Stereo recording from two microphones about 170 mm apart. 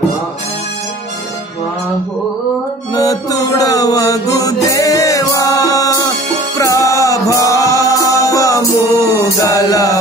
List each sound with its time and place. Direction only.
2.9 s music: 20° left (ahead or behind)